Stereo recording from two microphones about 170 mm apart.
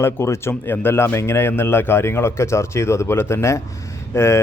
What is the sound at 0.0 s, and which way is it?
A man's voice, 15° left (ahead or behind).